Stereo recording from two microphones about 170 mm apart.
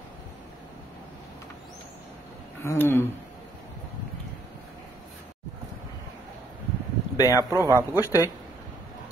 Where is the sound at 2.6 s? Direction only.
15° left (ahead or behind).